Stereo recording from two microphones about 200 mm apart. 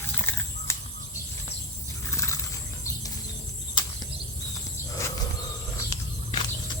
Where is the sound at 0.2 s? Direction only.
10° left (ahead or behind).